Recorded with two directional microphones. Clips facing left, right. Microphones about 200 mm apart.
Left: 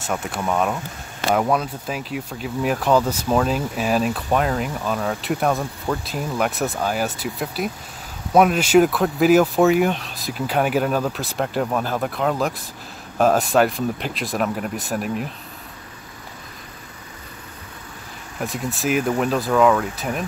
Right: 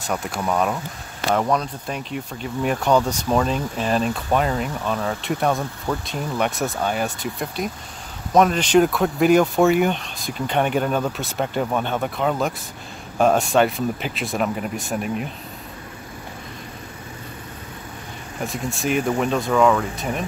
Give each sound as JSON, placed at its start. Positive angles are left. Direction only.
{"t": 0.0, "sound": "speech", "side_deg": 0}
{"t": 18.4, "sound": "speech", "side_deg": 0}